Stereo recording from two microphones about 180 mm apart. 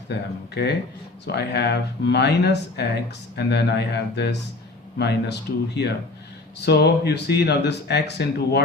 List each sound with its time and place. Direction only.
0.5 s speech: 65° left (ahead or behind)